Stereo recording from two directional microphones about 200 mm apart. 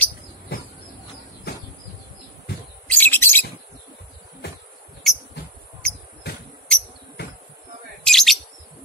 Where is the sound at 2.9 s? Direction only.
10° left (ahead or behind).